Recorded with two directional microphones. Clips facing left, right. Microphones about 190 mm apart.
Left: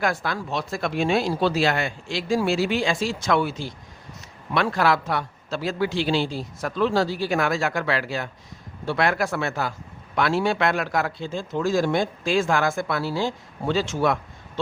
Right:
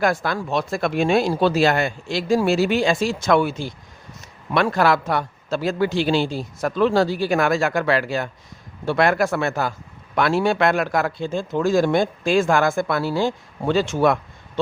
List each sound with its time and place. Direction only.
0.0 s speech: 45° right (ahead or behind)